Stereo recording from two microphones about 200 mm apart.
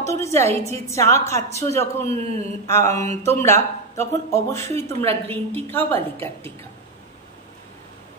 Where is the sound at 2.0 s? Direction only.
30° right (ahead or behind).